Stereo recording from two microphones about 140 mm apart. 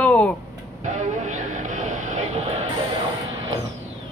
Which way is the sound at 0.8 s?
60° right (ahead or behind).